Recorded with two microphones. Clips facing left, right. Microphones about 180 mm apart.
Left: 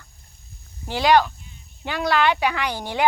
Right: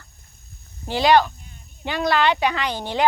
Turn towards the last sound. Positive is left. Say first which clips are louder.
# right 1 dB
turn(degrees=10)  # may be behind; listen again after turning